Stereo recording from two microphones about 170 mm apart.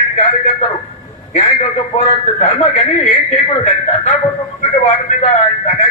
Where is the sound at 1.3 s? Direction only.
40° left (ahead or behind).